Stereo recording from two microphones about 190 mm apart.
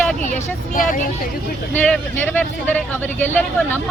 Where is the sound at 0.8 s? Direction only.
45° left (ahead or behind).